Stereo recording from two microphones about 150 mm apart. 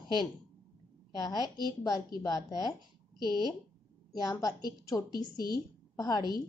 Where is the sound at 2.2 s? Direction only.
25° left (ahead or behind).